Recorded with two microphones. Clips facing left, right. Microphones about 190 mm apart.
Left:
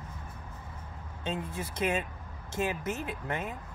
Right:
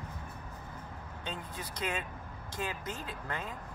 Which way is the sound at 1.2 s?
25° left (ahead or behind).